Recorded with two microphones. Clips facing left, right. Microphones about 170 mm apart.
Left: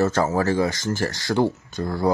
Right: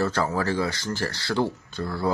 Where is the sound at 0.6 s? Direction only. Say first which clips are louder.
Left 4 dB; 20° left (ahead or behind).